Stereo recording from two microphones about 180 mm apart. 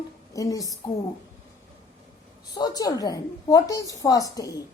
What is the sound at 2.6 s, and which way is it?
A woman's voice, 20° left (ahead or behind).